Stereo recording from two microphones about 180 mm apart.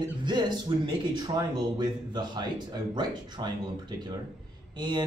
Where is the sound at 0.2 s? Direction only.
25° right (ahead or behind).